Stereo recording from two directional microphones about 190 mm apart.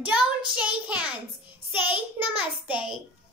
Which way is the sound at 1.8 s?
10° right (ahead or behind).